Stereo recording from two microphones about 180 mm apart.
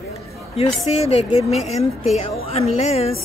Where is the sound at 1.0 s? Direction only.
35° left (ahead or behind).